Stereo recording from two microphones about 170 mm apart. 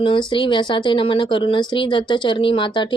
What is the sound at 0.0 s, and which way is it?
Speech, 30° left (ahead or behind).